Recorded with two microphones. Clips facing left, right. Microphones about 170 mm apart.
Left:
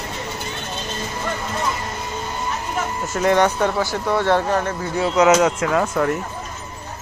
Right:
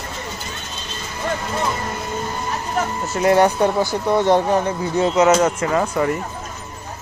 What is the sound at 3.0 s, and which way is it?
Speech, 5° right (ahead or behind).